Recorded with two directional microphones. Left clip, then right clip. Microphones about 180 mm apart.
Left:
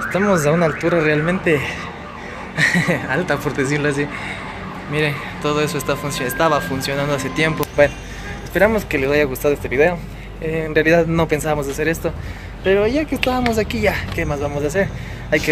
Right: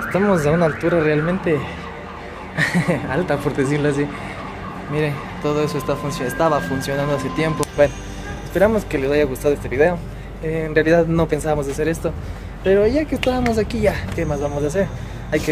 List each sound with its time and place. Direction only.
0.1 s speech: 10° right (ahead or behind)
2.5 s speech: 10° right (ahead or behind)